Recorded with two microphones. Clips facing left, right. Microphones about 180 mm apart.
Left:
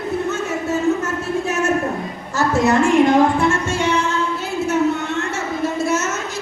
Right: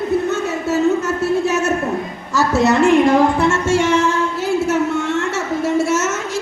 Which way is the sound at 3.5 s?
90° right.